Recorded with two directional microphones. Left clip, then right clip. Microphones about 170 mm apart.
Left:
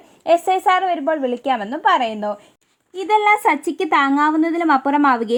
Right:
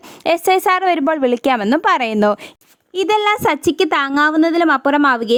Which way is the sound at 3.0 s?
25° right (ahead or behind).